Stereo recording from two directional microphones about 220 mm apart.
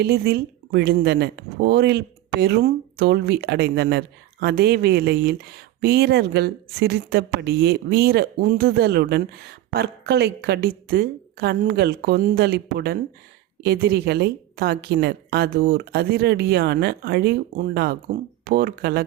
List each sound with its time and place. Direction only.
0.0 s speech: 45° right (ahead or behind)